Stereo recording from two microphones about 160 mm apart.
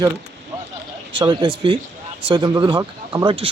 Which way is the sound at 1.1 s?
30° right (ahead or behind).